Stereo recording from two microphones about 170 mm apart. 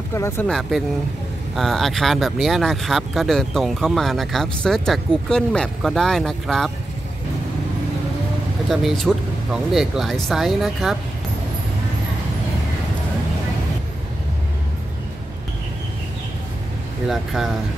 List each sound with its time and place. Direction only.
0.1 s speech: 15° left (ahead or behind)
0.5 s speech: centre (ahead or behind)
8.6 s speech: centre (ahead or behind)
17.1 s speech: centre (ahead or behind)